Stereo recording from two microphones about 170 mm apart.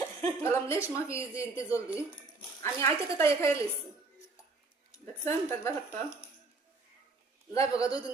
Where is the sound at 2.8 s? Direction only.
15° left (ahead or behind).